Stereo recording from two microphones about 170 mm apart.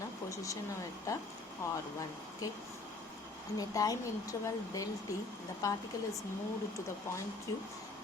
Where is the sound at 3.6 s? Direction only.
20° left (ahead or behind).